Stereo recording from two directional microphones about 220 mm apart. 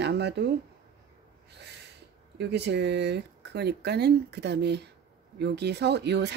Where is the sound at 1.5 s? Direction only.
50° right (ahead or behind).